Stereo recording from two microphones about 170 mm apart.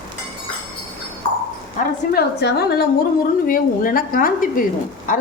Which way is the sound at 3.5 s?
55° left (ahead or behind).